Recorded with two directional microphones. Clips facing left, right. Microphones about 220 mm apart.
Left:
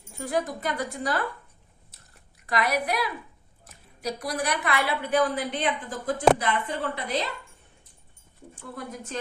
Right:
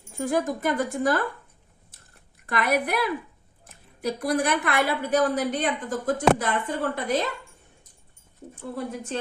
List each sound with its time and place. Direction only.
0.2 s a woman's voice: 45° right (ahead or behind)
2.5 s a woman's voice: 55° right (ahead or behind)